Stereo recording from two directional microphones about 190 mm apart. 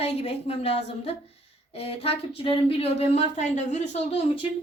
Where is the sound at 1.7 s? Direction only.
30° left (ahead or behind).